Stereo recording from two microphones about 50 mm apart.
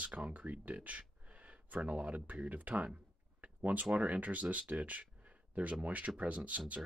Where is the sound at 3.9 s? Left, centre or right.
Right.